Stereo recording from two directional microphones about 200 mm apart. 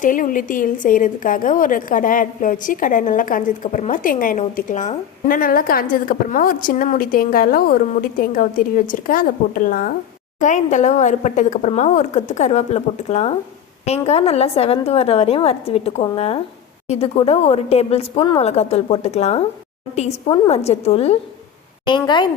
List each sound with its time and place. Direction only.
0.0 s a woman's voice: 40° left (ahead or behind); by 22.3 s 20° left (ahead or behind)